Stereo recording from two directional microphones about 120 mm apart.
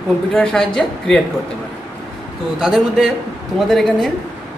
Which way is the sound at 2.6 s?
5° right (ahead or behind).